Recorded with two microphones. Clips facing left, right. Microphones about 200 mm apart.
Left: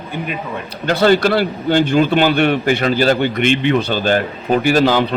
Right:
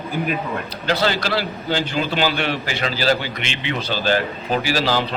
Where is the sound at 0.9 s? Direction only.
55° left (ahead or behind).